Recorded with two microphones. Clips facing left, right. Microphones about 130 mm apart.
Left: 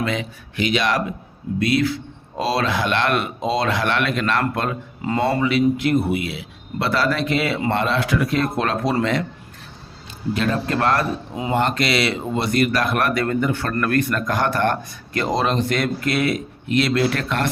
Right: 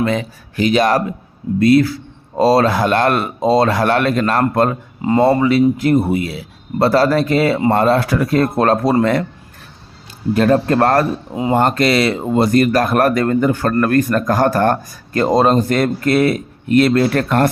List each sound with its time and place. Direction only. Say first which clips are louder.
0.0 s speech: right 6 dB; 40° right (ahead or behind)
5.0 s speech: right 7 dB; 30° right (ahead or behind); by 9.2 s 45° right (ahead or behind)
10.3 s speech: right 9 dB; 45° right (ahead or behind)